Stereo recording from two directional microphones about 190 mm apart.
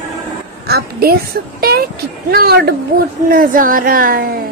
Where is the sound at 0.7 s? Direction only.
55° right (ahead or behind).